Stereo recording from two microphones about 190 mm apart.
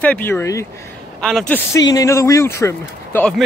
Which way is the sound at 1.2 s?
Centre (ahead or behind).